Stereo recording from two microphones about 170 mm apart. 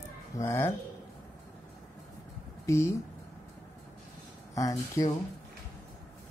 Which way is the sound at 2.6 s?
20° left (ahead or behind).